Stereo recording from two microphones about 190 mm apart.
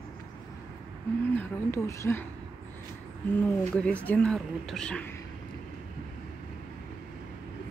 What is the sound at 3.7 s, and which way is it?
Speech, 5° left (ahead or behind).